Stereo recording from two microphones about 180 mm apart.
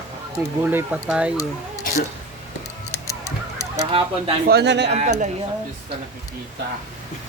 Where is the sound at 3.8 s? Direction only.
30° right (ahead or behind).